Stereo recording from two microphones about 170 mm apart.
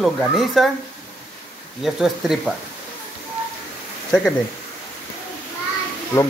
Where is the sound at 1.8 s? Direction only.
5° right (ahead or behind).